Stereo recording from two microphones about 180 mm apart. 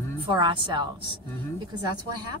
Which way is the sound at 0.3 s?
25° right (ahead or behind).